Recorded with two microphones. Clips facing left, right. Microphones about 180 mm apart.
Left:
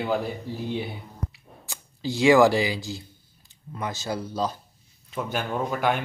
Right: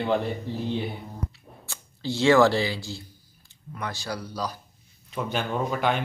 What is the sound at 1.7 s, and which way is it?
Speech, 15° left (ahead or behind).